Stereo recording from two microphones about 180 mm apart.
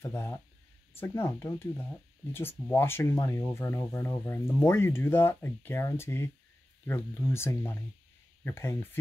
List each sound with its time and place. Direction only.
0.0 s speech: 15° left (ahead or behind)